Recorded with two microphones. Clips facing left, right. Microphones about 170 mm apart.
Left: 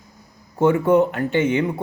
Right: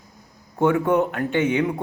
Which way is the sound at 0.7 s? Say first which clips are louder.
Left 5 dB; centre (ahead or behind).